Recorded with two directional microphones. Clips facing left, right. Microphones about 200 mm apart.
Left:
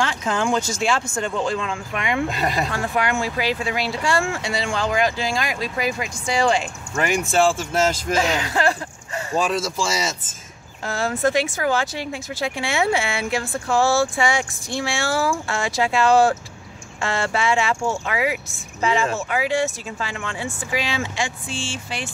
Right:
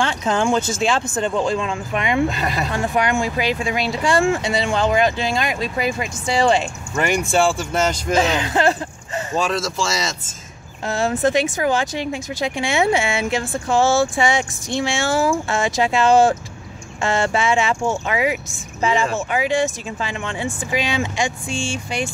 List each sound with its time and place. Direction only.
0.0 s speech: 25° right (ahead or behind)
7.0 s speech: centre (ahead or behind)
8.2 s speech: 25° right (ahead or behind)
9.4 s speech: 15° left (ahead or behind)
10.9 s speech: 20° right (ahead or behind)